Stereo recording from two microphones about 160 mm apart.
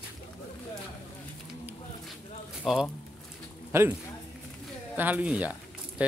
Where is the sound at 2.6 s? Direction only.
Centre (ahead or behind).